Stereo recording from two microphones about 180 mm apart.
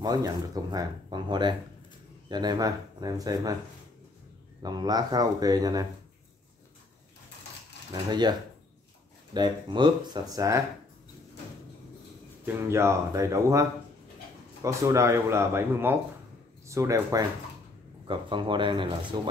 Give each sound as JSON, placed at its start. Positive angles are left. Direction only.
{"t": 0.0, "sound": "speech", "side_deg": -20}
{"t": 4.6, "sound": "speech", "side_deg": -20}
{"t": 7.9, "sound": "speech", "side_deg": -25}
{"t": 12.6, "sound": "speech", "side_deg": -15}